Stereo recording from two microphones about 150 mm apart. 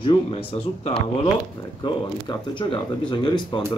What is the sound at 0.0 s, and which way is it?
Speech, 35° left (ahead or behind).